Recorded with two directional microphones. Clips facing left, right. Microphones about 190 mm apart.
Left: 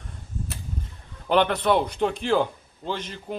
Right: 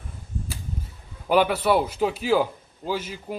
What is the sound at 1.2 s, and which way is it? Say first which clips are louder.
A man's voice: right 1 dB; 5° right (ahead or behind).